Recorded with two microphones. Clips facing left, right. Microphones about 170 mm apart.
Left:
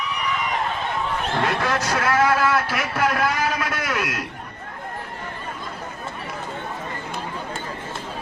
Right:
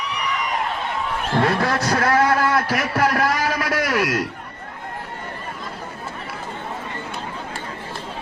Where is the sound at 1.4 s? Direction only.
35° right (ahead or behind).